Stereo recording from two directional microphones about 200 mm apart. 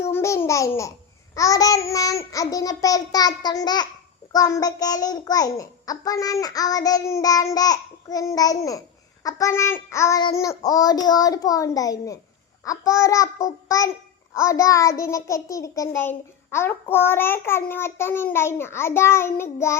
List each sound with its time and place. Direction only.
0.1 s babbling: 15° left (ahead or behind)
1.4 s a child's voice: 15° left (ahead or behind)